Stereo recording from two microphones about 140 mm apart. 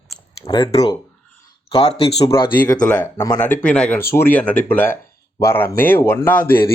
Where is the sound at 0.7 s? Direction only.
45° left (ahead or behind).